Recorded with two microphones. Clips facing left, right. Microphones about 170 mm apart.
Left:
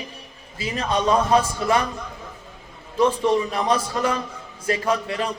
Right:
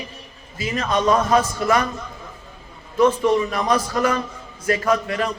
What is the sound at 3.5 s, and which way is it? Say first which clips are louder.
A man's voice: right 2 dB; 30° left (ahead or behind).